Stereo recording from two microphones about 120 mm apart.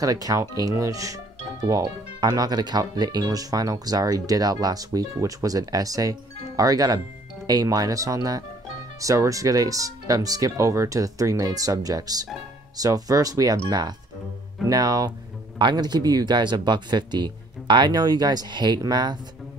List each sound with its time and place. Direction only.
0.0 s speech: 30° right (ahead or behind)